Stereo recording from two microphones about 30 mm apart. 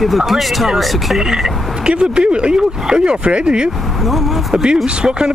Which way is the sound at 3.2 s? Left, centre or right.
Right.